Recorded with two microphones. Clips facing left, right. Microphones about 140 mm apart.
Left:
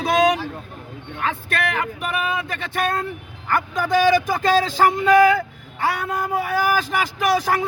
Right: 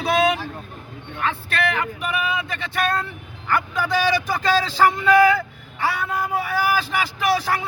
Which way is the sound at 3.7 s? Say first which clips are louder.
Left 6 dB; 45° left (ahead or behind).